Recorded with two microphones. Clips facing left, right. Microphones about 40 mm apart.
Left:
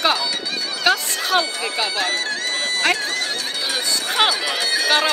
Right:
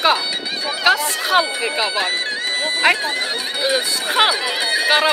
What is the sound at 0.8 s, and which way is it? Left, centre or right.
Run, centre.